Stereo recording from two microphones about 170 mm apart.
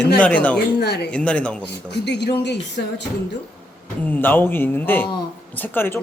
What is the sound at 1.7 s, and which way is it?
Speech, 85° left.